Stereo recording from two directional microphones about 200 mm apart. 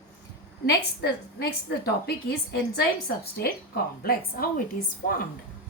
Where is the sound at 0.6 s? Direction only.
55° left (ahead or behind).